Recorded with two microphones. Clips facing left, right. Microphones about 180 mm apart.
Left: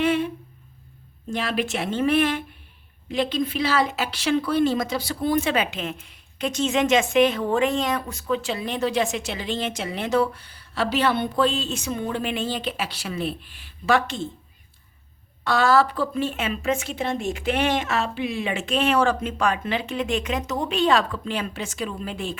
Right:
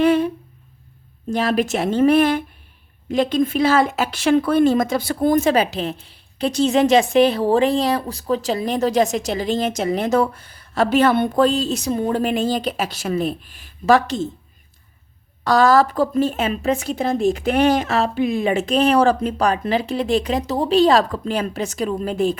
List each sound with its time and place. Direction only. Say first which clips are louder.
0.0 s a woman's voice: right 6 dB; 40° right (ahead or behind)
1.3 s a woman's voice: right 6 dB; 40° right (ahead or behind)
15.4 s a woman's voice: right 5 dB; 40° right (ahead or behind)